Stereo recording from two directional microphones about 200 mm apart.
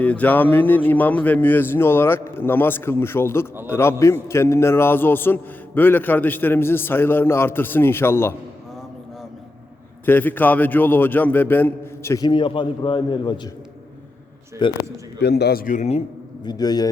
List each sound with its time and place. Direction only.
0.0 s a man's voice: 10° left (ahead or behind)
10.1 s a man's voice: 10° left (ahead or behind)
14.6 s a man's voice: 25° left (ahead or behind)
15.2 s a man's voice: 55° left (ahead or behind); by 16.5 s 30° left (ahead or behind)
16.5 s a man's voice: 20° left (ahead or behind)